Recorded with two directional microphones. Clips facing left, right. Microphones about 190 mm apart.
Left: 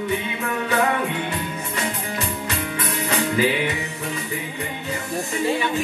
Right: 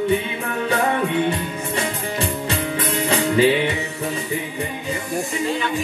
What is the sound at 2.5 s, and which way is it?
Music, 30° right (ahead or behind).